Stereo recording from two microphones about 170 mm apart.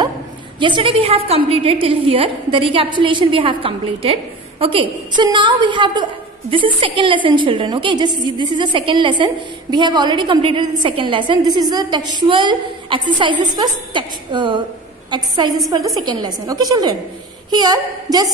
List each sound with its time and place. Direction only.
0.6 s a woman's voice: 30° right (ahead or behind)